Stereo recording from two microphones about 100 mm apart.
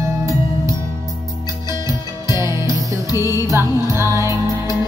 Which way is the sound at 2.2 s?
30° right (ahead or behind).